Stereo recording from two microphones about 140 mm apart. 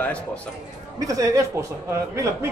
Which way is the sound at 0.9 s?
25° right (ahead or behind).